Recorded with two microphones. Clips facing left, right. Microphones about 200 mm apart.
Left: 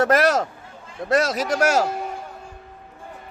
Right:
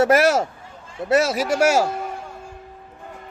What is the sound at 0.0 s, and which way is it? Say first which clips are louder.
Speech: right 2 dB; 5° right (ahead or behind).